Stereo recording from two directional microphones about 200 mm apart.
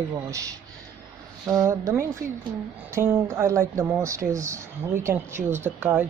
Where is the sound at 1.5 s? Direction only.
15° right (ahead or behind).